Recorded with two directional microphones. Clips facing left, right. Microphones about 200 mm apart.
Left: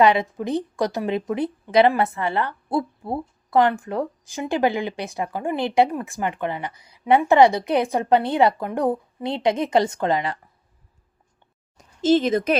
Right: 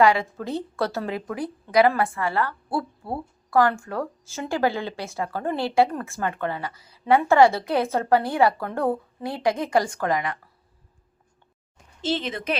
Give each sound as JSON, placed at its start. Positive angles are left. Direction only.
{"t": 0.0, "sound": "a woman's voice", "side_deg": 20}
{"t": 11.8, "sound": "speech", "side_deg": 45}